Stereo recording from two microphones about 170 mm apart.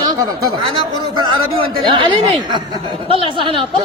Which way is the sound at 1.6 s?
30° right (ahead or behind).